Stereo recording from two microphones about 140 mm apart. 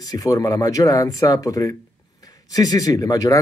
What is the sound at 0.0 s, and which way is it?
Speech, 25° left (ahead or behind).